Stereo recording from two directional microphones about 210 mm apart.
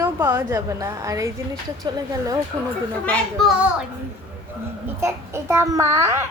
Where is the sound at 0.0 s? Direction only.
10° right (ahead or behind).